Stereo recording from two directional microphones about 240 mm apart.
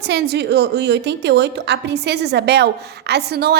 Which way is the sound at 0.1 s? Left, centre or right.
Right.